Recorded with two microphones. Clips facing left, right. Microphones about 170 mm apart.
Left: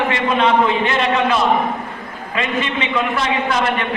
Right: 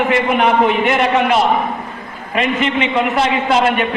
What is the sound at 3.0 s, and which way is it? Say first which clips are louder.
Speech: right 2 dB; 25° right (ahead or behind).